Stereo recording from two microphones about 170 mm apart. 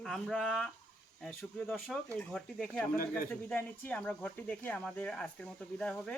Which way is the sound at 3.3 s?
10° left (ahead or behind).